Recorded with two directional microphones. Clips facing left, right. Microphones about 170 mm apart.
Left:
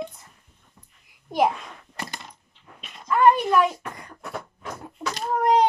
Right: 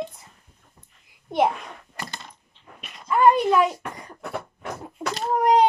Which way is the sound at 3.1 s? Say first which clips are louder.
Right 1 dB; 15° right (ahead or behind).